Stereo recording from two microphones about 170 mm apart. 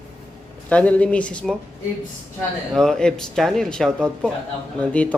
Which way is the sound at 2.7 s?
5° left (ahead or behind).